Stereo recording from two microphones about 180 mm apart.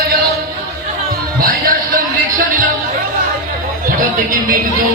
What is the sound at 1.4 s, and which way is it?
Music, 50° right (ahead or behind).